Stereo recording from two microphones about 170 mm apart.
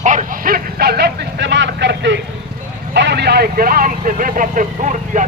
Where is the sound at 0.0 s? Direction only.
50° right (ahead or behind); by 2.2 s 90° right.